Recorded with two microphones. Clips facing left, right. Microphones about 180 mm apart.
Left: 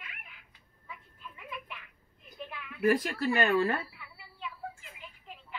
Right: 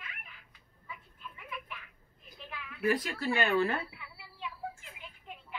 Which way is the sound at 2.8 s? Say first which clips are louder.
Left 4 dB; 45° left (ahead or behind).